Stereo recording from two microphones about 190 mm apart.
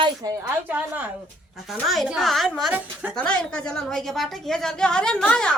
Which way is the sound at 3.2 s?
5° left (ahead or behind).